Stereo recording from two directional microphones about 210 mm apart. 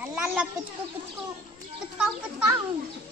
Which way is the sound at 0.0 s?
5° right (ahead or behind).